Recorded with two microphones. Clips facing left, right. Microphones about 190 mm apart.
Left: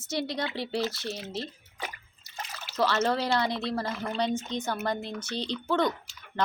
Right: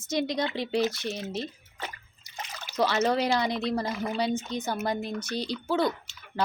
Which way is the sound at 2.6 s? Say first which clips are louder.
Right 1 dB; 15° right (ahead or behind).